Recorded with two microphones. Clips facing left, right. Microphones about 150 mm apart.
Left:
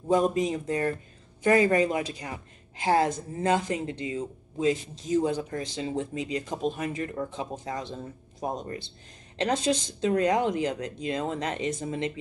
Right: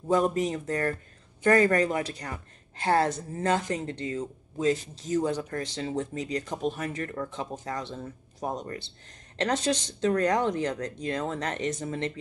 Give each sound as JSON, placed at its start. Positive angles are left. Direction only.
{"t": 0.1, "sound": "a woman's voice", "side_deg": 15}